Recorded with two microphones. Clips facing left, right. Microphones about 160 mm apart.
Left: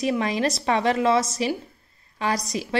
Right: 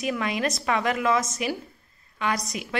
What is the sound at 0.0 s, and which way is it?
A woman's voice, 30° left (ahead or behind).